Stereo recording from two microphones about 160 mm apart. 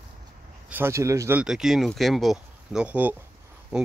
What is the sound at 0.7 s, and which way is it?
Speech, 15° right (ahead or behind).